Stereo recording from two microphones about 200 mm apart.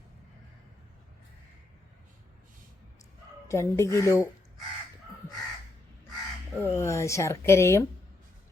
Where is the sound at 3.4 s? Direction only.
15° left (ahead or behind).